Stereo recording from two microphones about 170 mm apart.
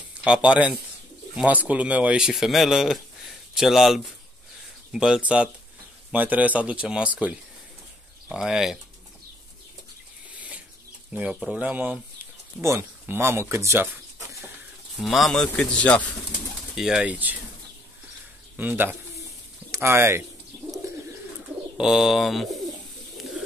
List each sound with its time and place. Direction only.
0.2 s speech: 5° right (ahead or behind)
10.3 s a sound: 10° right (ahead or behind)
11.1 s speech: 5° right (ahead or behind)
15.0 s speech: centre (ahead or behind)
18.6 s speech: 10° right (ahead or behind)
21.7 s speech: 5° right (ahead or behind)